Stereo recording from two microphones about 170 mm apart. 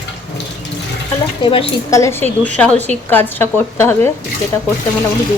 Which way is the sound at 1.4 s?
30° left (ahead or behind).